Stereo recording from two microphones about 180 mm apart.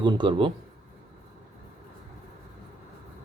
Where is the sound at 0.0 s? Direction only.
25° right (ahead or behind).